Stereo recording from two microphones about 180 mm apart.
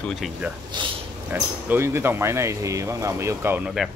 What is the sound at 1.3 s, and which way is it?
Speech, 10° right (ahead or behind).